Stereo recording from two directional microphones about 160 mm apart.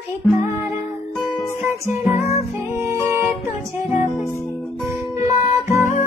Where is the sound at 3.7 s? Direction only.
15° right (ahead or behind).